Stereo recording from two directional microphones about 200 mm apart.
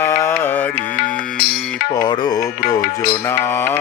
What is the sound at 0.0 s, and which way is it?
Music, 10° left (ahead or behind).